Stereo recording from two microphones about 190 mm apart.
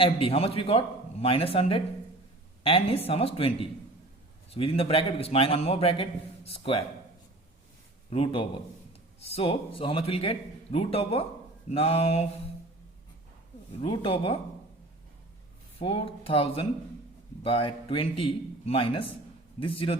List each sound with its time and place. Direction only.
0.0 s a man's voice: 30° left (ahead or behind)
8.1 s a man's voice: 30° left (ahead or behind)
13.8 s a man's voice: 25° left (ahead or behind)
15.8 s a man's voice: 30° left (ahead or behind)